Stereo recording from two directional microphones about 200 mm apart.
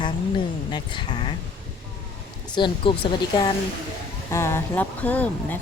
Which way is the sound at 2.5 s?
25° left (ahead or behind).